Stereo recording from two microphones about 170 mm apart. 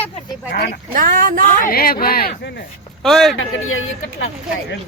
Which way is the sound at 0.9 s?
50° right (ahead or behind).